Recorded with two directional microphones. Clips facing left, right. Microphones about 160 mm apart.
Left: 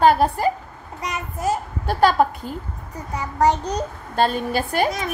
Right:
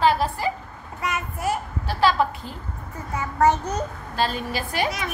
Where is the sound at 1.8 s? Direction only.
50° left (ahead or behind).